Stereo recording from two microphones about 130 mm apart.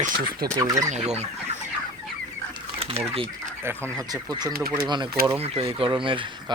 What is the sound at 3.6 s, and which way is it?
Speech, 20° right (ahead or behind).